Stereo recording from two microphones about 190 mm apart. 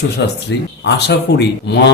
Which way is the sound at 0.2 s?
65° left (ahead or behind).